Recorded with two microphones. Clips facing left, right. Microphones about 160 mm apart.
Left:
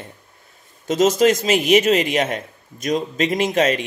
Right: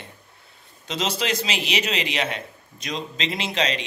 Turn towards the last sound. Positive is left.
turn(degrees=50)  # may be behind; listen again after turning